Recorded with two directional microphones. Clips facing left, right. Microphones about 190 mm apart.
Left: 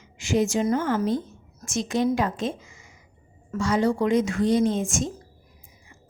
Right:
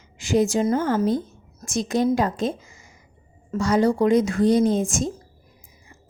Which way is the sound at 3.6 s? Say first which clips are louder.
Right 3 dB; 40° right (ahead or behind).